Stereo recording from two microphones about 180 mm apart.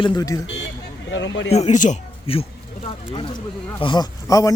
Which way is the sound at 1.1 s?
90° left.